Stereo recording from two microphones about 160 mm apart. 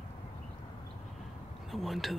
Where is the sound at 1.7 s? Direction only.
Centre (ahead or behind).